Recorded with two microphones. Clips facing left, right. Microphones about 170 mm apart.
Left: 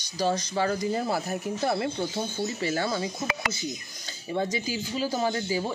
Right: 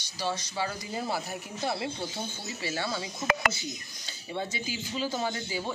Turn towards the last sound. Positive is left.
turn(degrees=40)  # may be behind; listen again after turning